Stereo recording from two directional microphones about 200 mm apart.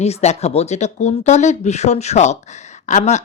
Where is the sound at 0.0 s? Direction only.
35° left (ahead or behind).